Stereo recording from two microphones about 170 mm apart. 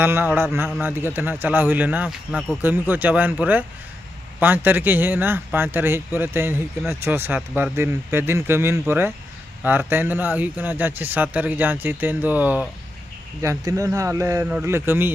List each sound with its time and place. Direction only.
0.0 s speech: 10° right (ahead or behind)